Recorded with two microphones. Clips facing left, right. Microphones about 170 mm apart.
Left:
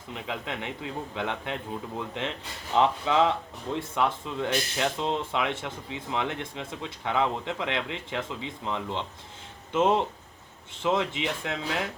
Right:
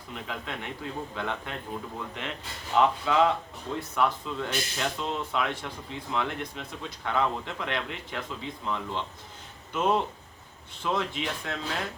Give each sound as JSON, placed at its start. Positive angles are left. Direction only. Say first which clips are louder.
{"t": 0.1, "sound": "speech", "louder": "left 2 dB", "side_deg": 20}
{"t": 2.7, "sound": "speech", "louder": "even", "side_deg": 25}